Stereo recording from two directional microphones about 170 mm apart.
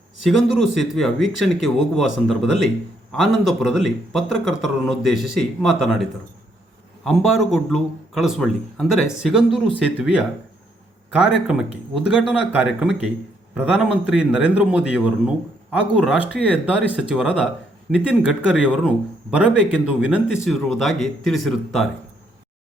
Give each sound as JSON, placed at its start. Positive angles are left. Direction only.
{"t": 0.3, "sound": "speech", "side_deg": 0}